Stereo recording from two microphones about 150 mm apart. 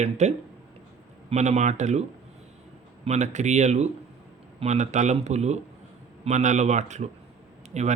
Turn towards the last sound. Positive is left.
turn(degrees=-50)  # may be behind; listen again after turning